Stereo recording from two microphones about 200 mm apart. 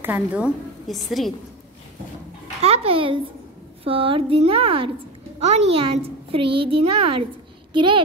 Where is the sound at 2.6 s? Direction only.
30° right (ahead or behind).